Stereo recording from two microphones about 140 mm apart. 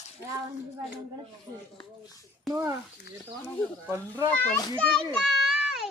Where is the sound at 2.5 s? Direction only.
25° right (ahead or behind).